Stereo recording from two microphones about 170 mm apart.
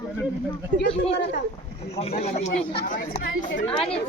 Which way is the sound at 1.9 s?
35° left (ahead or behind).